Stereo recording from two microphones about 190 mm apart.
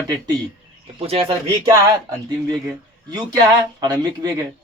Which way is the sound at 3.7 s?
20° right (ahead or behind).